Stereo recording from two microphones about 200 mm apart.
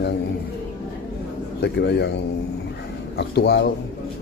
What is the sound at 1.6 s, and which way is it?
Speech, 55° left (ahead or behind).